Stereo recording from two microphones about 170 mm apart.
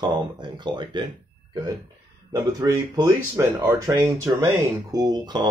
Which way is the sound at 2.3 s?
25° right (ahead or behind).